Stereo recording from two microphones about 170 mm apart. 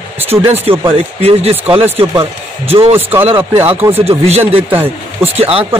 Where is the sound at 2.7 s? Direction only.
35° right (ahead or behind).